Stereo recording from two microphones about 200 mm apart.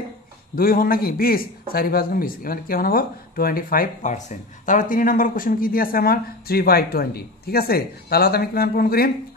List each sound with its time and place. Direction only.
0.6 s a man's voice: 45° left (ahead or behind)